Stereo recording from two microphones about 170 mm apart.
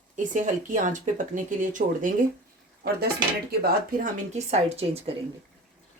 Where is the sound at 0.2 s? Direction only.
50° right (ahead or behind).